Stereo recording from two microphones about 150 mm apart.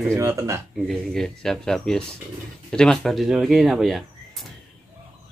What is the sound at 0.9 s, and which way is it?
Speech, 5° left (ahead or behind).